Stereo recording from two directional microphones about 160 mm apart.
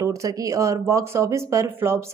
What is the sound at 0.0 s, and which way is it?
A woman's voice, 20° right (ahead or behind).